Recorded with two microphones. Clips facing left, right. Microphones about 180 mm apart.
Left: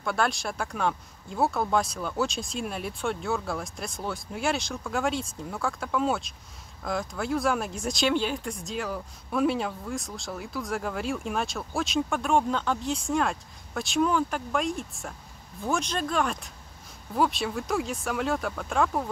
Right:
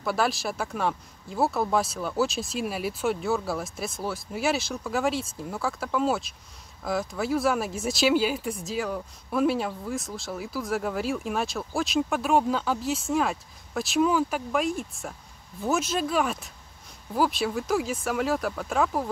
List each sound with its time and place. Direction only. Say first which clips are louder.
0.0 s speech: right 1 dB; 5° right (ahead or behind)